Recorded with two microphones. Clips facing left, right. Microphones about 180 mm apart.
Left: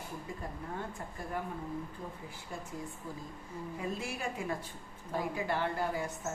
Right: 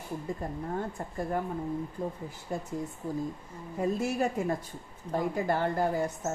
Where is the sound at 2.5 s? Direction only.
40° right (ahead or behind).